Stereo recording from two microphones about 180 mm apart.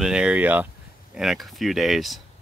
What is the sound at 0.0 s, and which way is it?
Speech, 5° right (ahead or behind).